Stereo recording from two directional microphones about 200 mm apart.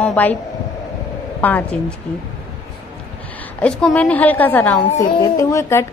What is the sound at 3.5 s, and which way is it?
A woman's voice, 5° left (ahead or behind).